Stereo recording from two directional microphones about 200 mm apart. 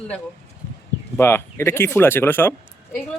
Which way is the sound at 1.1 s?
10° left (ahead or behind).